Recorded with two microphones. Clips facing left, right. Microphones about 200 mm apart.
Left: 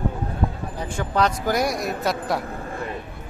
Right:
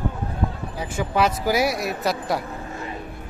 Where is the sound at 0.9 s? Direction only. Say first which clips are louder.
Right 1 dB; 5° right (ahead or behind).